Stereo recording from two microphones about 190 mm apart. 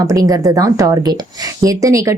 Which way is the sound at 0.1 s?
20° right (ahead or behind).